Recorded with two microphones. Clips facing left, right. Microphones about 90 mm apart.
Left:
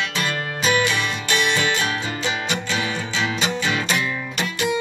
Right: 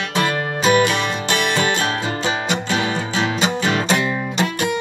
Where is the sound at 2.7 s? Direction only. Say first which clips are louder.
Right 4 dB; 40° right (ahead or behind).